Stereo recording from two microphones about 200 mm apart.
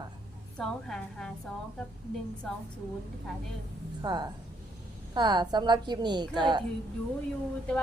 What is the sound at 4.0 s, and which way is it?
A woman's voice, 20° right (ahead or behind).